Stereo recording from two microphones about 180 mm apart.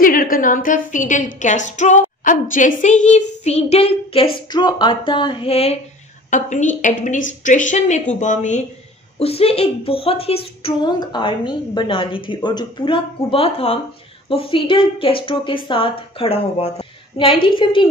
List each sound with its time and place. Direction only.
0.0 s a woman's voice: 50° left (ahead or behind); by 17.8 s 30° left (ahead or behind)